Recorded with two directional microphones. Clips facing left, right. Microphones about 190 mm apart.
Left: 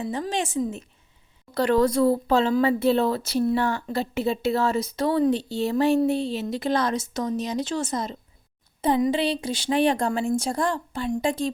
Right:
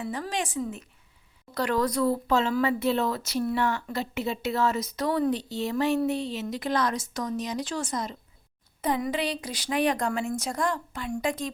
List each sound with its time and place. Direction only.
0.0 s a woman's voice: 25° left (ahead or behind)